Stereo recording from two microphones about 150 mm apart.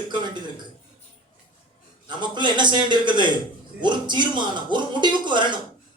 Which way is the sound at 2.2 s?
30° right (ahead or behind).